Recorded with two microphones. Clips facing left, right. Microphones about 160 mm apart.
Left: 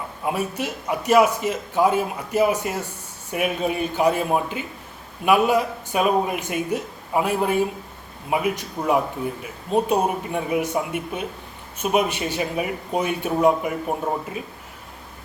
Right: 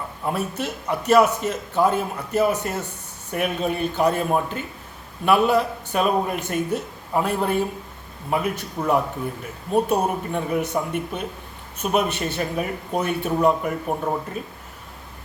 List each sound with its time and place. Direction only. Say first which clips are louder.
0.3 s a man's voice: left 1 dB; 10° left (ahead or behind)